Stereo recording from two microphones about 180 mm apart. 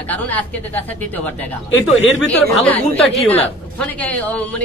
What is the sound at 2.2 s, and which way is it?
A woman's voice, 10° left (ahead or behind).